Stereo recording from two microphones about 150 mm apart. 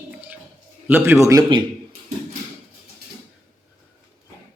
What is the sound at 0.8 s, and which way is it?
Speech, 15° right (ahead or behind).